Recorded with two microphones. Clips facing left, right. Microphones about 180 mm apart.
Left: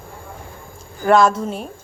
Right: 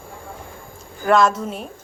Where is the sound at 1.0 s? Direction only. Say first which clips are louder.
Left 2 dB; centre (ahead or behind).